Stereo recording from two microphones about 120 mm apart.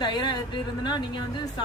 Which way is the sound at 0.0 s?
40° left (ahead or behind).